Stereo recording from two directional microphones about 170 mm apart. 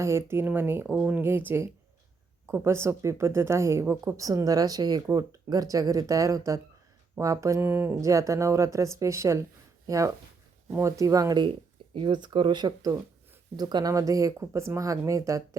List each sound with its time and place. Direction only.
0.0 s speech: 15° right (ahead or behind)